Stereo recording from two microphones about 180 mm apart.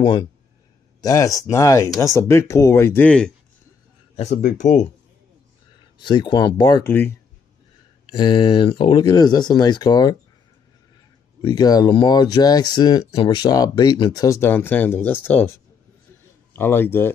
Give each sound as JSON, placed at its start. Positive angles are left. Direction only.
{"t": 0.0, "sound": "speech", "side_deg": 25}
{"t": 4.2, "sound": "speech", "side_deg": 40}
{"t": 5.9, "sound": "speech", "side_deg": 25}
{"t": 6.8, "sound": "speech", "side_deg": 10}
{"t": 8.1, "sound": "speech", "side_deg": 25}
{"t": 11.4, "sound": "speech", "side_deg": 20}
{"t": 16.5, "sound": "speech", "side_deg": 10}